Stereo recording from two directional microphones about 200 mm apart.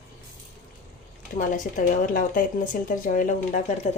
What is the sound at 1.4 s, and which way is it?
A woman's voice, 40° left (ahead or behind).